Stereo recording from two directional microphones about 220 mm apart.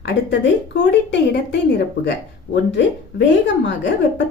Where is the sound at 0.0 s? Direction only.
55° left (ahead or behind).